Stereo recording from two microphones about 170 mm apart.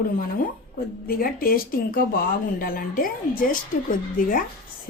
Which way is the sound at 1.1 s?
60° left (ahead or behind).